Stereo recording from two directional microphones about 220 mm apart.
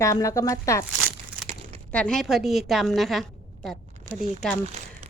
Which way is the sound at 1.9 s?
5° left (ahead or behind).